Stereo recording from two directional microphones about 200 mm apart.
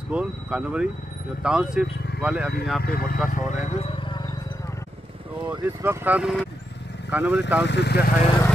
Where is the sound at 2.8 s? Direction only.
50° left (ahead or behind).